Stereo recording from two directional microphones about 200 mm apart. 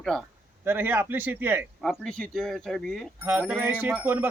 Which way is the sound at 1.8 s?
Centre (ahead or behind).